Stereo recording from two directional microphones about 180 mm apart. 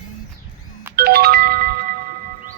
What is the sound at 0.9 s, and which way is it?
Music, 60° right (ahead or behind).